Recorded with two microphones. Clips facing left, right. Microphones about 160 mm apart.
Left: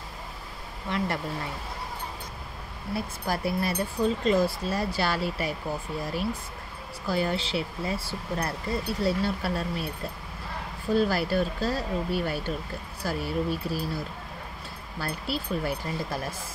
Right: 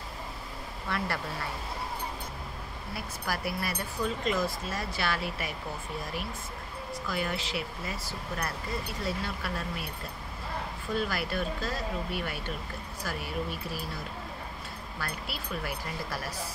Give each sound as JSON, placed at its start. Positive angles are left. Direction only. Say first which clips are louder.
{"t": 0.8, "sound": "speech", "louder": "left 4 dB", "side_deg": 20}
{"t": 2.9, "sound": "speech", "louder": "left 6 dB", "side_deg": 25}
{"t": 7.1, "sound": "speech", "louder": "left 7 dB", "side_deg": 30}
{"t": 10.9, "sound": "speech", "louder": "left 8 dB", "side_deg": 30}
{"t": 15.0, "sound": "speech", "louder": "left 7 dB", "side_deg": 30}